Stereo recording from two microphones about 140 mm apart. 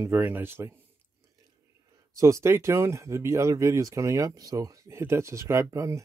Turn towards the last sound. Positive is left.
turn(degrees=-20)  # may be behind; listen again after turning